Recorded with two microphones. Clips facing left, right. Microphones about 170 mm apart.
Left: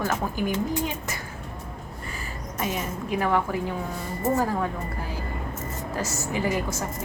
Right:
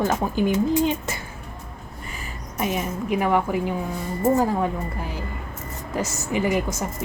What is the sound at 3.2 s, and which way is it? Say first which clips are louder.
A woman's voice: right 2 dB; 15° right (ahead or behind).